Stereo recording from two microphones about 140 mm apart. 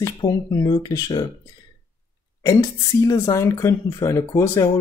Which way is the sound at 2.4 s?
25° left (ahead or behind).